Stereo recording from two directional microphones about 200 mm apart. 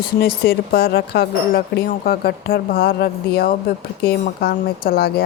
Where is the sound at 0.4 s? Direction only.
50° left (ahead or behind).